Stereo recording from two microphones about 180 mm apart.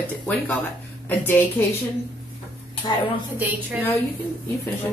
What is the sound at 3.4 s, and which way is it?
Speech, 10° right (ahead or behind).